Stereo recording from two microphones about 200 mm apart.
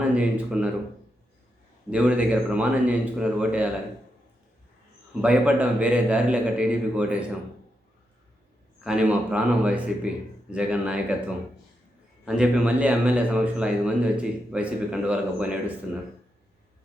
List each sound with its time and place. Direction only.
0.1 s a man's voice: 5° right (ahead or behind)
1.9 s a man's voice: 5° right (ahead or behind)
5.2 s a man's voice: 5° right (ahead or behind)
8.8 s a man's voice: 5° right (ahead or behind)
12.2 s a man's voice: 5° right (ahead or behind)